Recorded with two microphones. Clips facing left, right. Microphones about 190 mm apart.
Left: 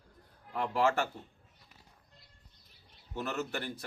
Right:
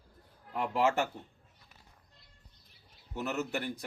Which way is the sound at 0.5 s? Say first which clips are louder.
Even; 15° right (ahead or behind).